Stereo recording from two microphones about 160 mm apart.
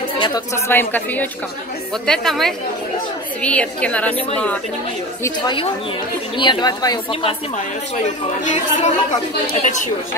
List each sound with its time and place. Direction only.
0.7 s a woman's voice: 10° left (ahead or behind)
2.0 s a woman's voice: centre (ahead or behind)
6.3 s speech: 30° left (ahead or behind)
8.0 s speech: 45° left (ahead or behind)